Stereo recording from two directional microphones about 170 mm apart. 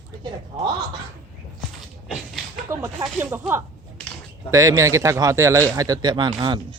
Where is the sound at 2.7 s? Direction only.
15° right (ahead or behind).